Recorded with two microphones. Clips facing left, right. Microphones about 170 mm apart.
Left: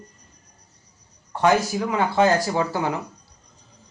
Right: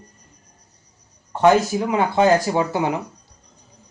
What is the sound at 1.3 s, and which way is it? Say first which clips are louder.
Speech: right 4 dB; 20° right (ahead or behind).